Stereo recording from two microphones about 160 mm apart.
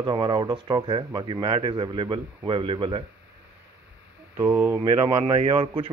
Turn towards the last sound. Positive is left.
turn(degrees=-35)  # may be behind; listen again after turning